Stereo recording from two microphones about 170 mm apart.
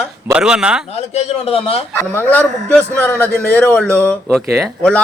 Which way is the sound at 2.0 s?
10° left (ahead or behind).